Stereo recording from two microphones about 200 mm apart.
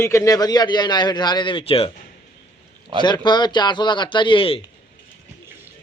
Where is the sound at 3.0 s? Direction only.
20° left (ahead or behind).